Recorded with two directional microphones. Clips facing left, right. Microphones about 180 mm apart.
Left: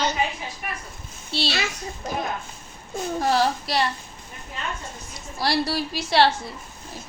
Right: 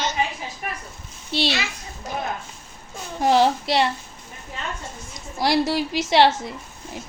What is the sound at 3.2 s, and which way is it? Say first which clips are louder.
Speech: right 5 dB; 20° right (ahead or behind).